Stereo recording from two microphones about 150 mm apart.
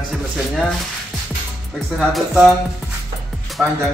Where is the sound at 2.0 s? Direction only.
Centre (ahead or behind).